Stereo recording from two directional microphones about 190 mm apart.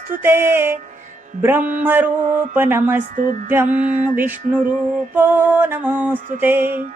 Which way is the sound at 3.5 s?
10° right (ahead or behind).